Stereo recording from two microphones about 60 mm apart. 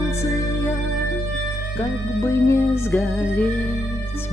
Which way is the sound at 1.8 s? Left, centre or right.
Left.